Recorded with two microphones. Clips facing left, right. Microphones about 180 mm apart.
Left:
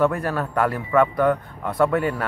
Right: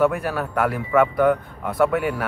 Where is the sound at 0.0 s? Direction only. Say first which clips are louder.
Right 1 dB; 5° right (ahead or behind).